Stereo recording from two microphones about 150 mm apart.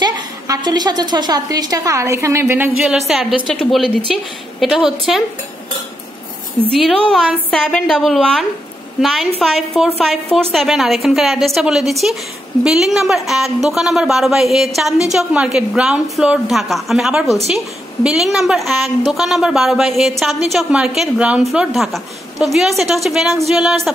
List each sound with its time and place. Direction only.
0.0 s a woman's voice: 25° right (ahead or behind)
3.1 s a woman's voice: centre (ahead or behind)
6.7 s a woman's voice: centre (ahead or behind)